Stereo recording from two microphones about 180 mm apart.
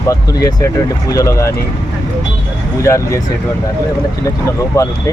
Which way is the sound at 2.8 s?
15° left (ahead or behind).